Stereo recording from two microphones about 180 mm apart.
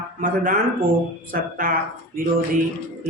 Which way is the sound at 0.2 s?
50° right (ahead or behind).